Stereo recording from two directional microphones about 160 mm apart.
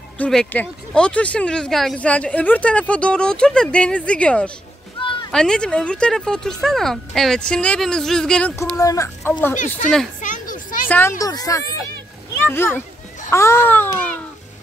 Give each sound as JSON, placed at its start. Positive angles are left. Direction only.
{"t": 0.2, "sound": "speech", "side_deg": 5}
{"t": 8.7, "sound": "speech", "side_deg": 20}
{"t": 10.2, "sound": "a sound", "side_deg": 55}
{"t": 10.9, "sound": "speech", "side_deg": 15}